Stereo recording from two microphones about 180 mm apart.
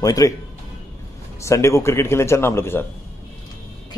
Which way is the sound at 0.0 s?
20° left (ahead or behind).